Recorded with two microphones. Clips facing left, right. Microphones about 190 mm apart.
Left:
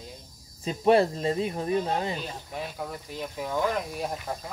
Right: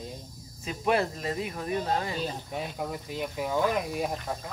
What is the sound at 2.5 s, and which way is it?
Speech, 15° right (ahead or behind).